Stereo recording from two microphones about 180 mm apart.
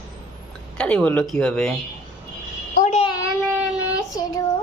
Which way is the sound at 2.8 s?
40° left (ahead or behind).